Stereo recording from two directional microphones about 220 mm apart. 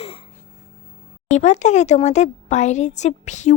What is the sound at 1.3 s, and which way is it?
Speech, 30° left (ahead or behind).